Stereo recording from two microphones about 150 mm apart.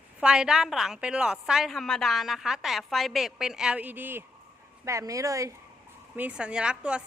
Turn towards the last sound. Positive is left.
turn(degrees=-5)  # may be behind; listen again after turning